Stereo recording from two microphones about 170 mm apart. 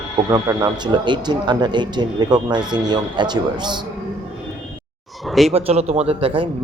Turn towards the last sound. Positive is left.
turn(degrees=-35)  # may be behind; listen again after turning